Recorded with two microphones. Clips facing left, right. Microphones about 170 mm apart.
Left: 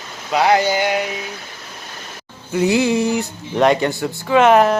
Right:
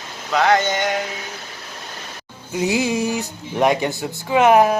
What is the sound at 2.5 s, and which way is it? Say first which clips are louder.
Speech: left 4 dB; 15° right (ahead or behind).